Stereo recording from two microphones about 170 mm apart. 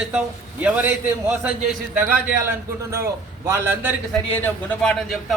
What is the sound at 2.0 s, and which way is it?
A man's voice, 10° right (ahead or behind).